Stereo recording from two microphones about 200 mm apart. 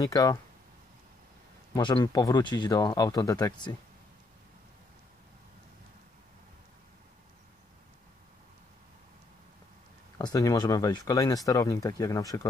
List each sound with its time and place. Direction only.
0.0 s speech: 15° left (ahead or behind)
1.7 s speech: 25° left (ahead or behind)
10.1 s speech: 20° left (ahead or behind)